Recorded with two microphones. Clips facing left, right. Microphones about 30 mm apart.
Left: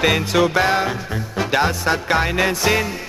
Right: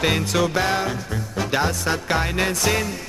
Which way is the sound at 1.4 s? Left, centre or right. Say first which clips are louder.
Left 4 dB; left.